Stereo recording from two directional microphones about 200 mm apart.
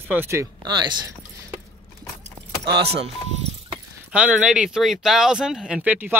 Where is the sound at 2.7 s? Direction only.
30° right (ahead or behind).